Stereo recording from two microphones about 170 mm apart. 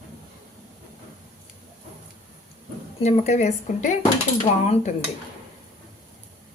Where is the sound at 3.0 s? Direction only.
40° left (ahead or behind).